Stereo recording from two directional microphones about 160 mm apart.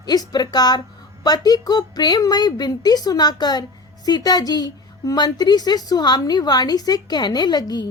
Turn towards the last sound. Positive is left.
turn(degrees=25)  # may be behind; listen again after turning